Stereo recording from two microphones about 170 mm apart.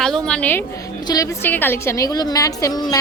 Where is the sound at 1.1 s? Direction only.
20° left (ahead or behind).